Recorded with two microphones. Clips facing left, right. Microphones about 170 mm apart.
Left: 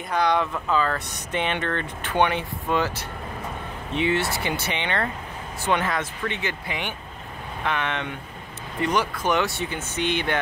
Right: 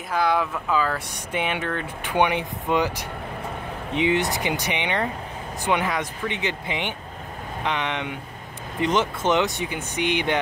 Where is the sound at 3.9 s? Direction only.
15° right (ahead or behind).